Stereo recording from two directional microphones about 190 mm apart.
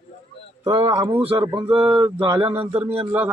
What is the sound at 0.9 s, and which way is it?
Speech, 25° right (ahead or behind).